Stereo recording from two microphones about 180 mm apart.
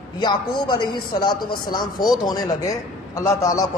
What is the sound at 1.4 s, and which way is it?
Speech, 55° left (ahead or behind).